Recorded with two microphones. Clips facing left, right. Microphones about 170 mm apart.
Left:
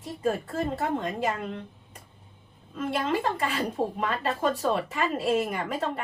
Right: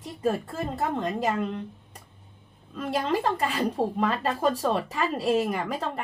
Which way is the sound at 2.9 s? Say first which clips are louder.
Right 2 dB; 40° right (ahead or behind).